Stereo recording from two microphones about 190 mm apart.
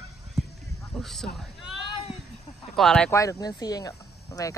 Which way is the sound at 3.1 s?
15° left (ahead or behind).